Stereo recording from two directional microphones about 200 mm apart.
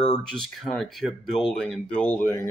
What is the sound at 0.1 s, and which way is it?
Speech, centre (ahead or behind).